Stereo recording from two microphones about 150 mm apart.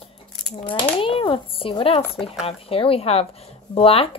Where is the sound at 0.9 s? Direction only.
35° left (ahead or behind).